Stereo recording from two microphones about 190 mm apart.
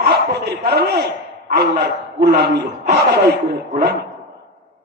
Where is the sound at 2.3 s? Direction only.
60° right (ahead or behind).